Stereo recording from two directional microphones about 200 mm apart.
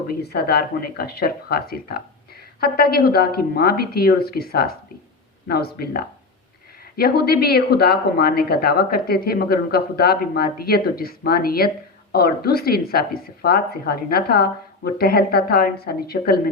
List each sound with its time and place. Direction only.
0.1 s speech: 50° left (ahead or behind)